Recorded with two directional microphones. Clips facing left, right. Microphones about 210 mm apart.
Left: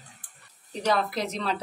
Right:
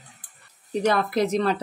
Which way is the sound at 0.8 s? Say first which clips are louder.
Right 4 dB; 55° right (ahead or behind).